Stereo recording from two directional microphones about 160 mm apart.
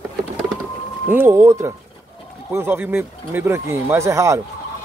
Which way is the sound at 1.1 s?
15° right (ahead or behind).